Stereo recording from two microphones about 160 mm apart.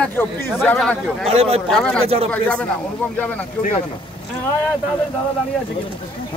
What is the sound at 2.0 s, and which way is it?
Speech, 40° right (ahead or behind).